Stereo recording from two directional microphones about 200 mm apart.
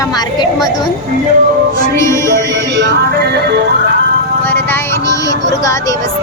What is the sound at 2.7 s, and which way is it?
Music, 65° right (ahead or behind).